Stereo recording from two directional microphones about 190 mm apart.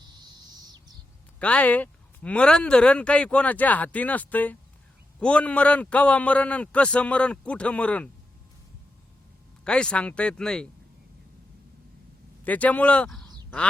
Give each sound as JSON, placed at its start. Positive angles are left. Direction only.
{"t": 0.2, "sound": "owl", "side_deg": -20}
{"t": 1.4, "sound": "speech", "side_deg": 5}
{"t": 9.6, "sound": "speech", "side_deg": 5}
{"t": 12.5, "sound": "speech", "side_deg": 10}